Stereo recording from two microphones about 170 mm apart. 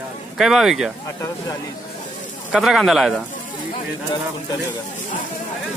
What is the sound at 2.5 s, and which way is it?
Speech, centre (ahead or behind).